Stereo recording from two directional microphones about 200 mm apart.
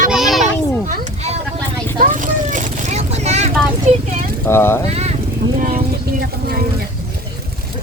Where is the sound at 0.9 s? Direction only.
35° right (ahead or behind).